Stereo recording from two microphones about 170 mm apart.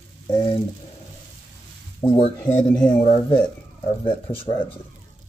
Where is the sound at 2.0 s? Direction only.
20° left (ahead or behind).